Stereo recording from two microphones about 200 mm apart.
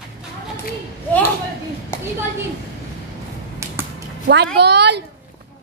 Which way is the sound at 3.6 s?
15° right (ahead or behind).